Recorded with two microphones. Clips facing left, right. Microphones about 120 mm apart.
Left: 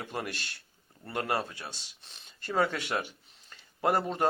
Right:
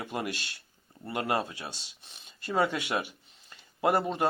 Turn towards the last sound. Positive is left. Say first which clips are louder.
# right 1 dB
turn(degrees=-5)  # may be behind; listen again after turning